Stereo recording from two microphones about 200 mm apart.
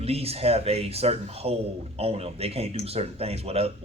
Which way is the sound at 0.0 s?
30° right (ahead or behind).